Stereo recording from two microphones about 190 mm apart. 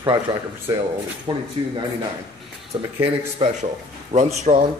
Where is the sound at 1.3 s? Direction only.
25° right (ahead or behind).